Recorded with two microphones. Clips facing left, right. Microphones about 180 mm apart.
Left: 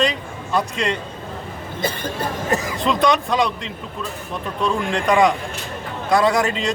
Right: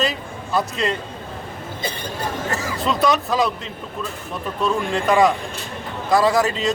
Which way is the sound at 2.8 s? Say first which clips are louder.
Even; 5° right (ahead or behind).